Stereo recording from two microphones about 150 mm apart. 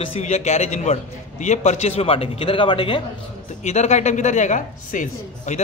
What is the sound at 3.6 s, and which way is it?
A man's voice, 50° left (ahead or behind).